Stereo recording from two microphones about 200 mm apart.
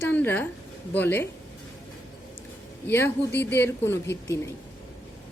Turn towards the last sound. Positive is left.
turn(degrees=15)  # may be behind; listen again after turning